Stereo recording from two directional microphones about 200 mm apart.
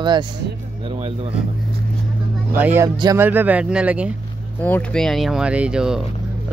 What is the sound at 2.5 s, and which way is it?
Speech, 10° right (ahead or behind).